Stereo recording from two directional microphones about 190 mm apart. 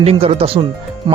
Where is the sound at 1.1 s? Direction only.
25° right (ahead or behind).